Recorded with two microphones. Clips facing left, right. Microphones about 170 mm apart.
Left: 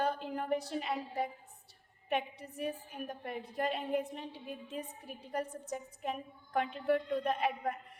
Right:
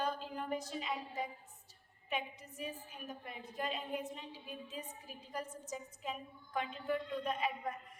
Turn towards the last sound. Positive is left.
turn(degrees=65)  # may be behind; listen again after turning